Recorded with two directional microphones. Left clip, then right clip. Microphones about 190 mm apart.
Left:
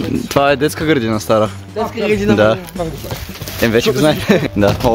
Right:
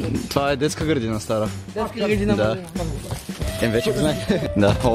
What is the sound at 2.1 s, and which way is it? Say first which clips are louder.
Speech: left 8 dB; 15° right (ahead or behind).